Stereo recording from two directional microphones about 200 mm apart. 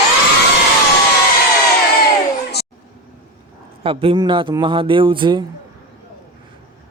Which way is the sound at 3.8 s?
25° right (ahead or behind).